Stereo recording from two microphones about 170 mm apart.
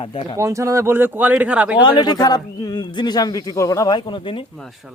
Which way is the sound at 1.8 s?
25° left (ahead or behind).